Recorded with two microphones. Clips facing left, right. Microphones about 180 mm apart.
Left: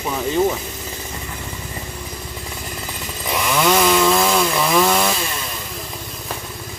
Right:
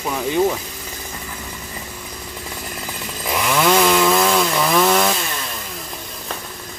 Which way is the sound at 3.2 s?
Centre (ahead or behind).